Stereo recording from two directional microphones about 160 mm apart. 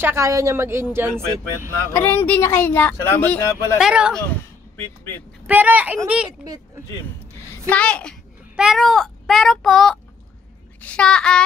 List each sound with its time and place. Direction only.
0.0 s a woman's voice: 20° right (ahead or behind)
1.9 s speech: 10° left (ahead or behind)
3.7 s a child's voice: 5° right (ahead or behind)
4.7 s speech: 15° left (ahead or behind)
5.5 s a woman's voice: 10° right (ahead or behind)
7.7 s a child's voice: 5° left (ahead or behind)